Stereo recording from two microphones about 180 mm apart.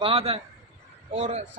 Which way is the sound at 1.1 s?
40° right (ahead or behind).